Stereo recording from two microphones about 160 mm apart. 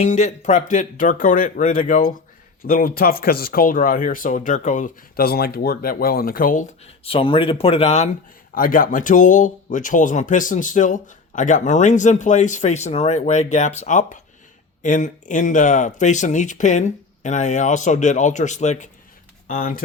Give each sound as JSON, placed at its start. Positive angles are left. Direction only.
{"t": 0.0, "sound": "speech", "side_deg": 45}
{"t": 8.5, "sound": "speech", "side_deg": 60}
{"t": 19.5, "sound": "speech", "side_deg": 65}